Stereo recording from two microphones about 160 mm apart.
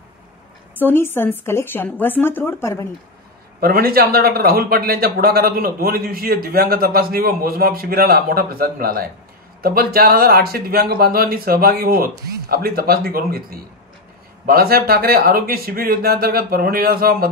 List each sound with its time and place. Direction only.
0.7 s a woman's voice: 15° left (ahead or behind)
3.6 s a man's voice: 70° right (ahead or behind)